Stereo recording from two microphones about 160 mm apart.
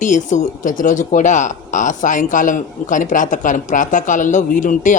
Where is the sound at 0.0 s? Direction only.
50° left (ahead or behind).